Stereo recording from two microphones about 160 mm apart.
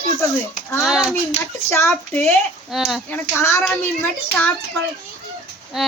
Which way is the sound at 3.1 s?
15° left (ahead or behind).